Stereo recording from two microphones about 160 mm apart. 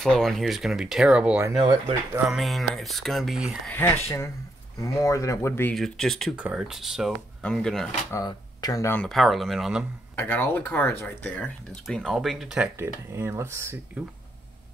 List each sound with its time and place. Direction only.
0.0 s speech: 5° left (ahead or behind)
3.7 s speech: 15° left (ahead or behind)
5.8 s speech: centre (ahead or behind)
8.1 s speech: 25° left (ahead or behind)
9.0 s speech: centre (ahead or behind)
10.1 s speech: 10° left (ahead or behind); by 12.7 s 5° right (ahead or behind)
12.7 s speech: 15° right (ahead or behind)